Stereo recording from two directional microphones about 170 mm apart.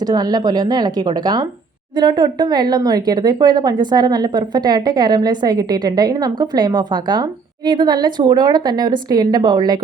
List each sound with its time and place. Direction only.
0.0 s a woman's voice: 25° right (ahead or behind)